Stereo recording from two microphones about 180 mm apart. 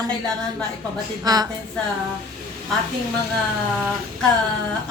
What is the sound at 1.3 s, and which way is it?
Speech, 20° right (ahead or behind).